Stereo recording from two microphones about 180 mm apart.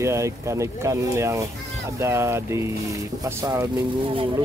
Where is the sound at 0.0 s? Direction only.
15° right (ahead or behind).